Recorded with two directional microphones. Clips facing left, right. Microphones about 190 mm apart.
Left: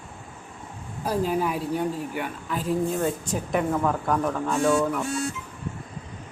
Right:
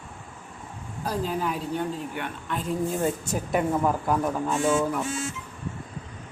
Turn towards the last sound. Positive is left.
turn(degrees=0)  # may be behind; listen again after turning